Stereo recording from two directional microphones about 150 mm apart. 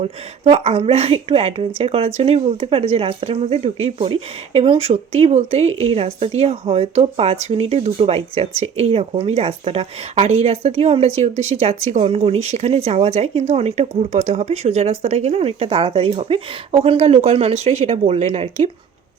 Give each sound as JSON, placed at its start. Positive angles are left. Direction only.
{"t": 0.0, "sound": "a woman's voice", "side_deg": -45}